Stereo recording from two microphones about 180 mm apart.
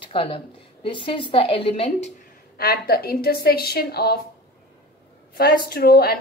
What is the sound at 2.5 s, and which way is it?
A woman's voice, 60° left (ahead or behind).